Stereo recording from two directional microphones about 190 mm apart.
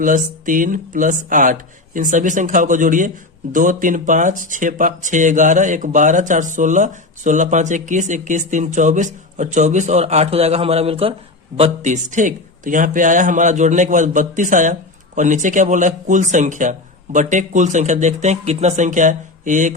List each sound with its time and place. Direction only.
0.0 s a man's voice: 45° right (ahead or behind)